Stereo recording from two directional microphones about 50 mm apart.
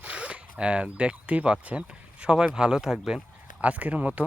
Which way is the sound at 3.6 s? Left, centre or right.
Right.